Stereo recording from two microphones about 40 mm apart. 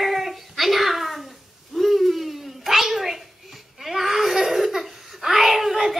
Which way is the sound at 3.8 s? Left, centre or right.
Centre.